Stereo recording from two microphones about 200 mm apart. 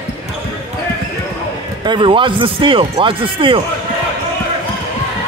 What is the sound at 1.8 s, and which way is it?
Speech, 25° right (ahead or behind).